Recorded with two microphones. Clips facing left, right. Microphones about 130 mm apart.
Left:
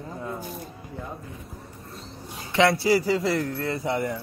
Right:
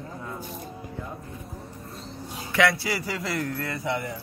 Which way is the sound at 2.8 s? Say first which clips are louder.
Left 8 dB; 30° left (ahead or behind).